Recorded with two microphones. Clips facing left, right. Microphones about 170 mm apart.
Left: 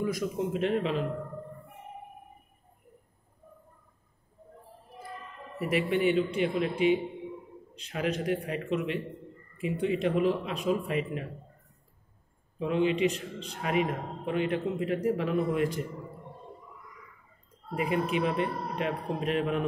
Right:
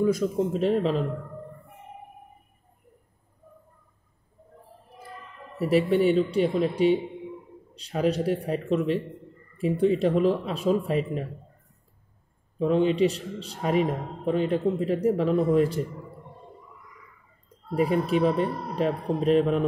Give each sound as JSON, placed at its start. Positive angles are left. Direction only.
{"t": 0.0, "sound": "a man's voice", "side_deg": -30}
{"t": 5.6, "sound": "a man's voice", "side_deg": -30}
{"t": 12.5, "sound": "a man's voice", "side_deg": -35}
{"t": 17.7, "sound": "a man's voice", "side_deg": -35}